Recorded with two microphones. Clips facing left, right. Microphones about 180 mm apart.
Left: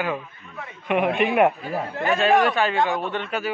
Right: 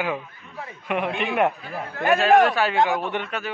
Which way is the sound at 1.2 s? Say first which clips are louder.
Left 3 dB; 10° left (ahead or behind).